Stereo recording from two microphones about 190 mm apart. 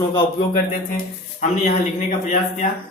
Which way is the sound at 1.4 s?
40° left (ahead or behind).